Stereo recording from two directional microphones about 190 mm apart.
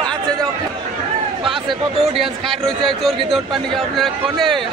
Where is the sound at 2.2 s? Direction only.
Centre (ahead or behind).